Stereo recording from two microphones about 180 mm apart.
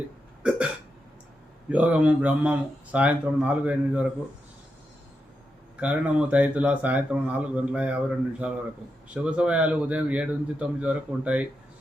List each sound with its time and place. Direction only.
1.7 s speech: 5° right (ahead or behind)
5.8 s speech: 5° right (ahead or behind)